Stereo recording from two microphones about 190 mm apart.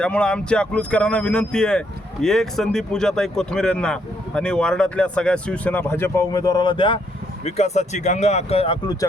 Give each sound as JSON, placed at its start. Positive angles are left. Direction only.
{"t": 0.0, "sound": "speech", "side_deg": 5}